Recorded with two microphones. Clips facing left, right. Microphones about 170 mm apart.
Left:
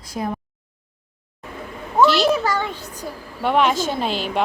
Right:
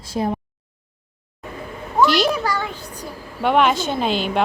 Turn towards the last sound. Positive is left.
turn(degrees=0)  # may be behind; listen again after turning